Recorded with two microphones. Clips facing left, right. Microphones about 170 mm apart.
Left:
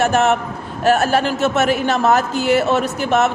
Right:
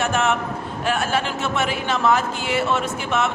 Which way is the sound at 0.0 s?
40° left (ahead or behind).